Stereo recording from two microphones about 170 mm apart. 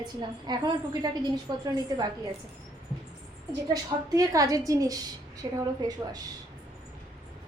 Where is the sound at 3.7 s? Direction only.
20° right (ahead or behind).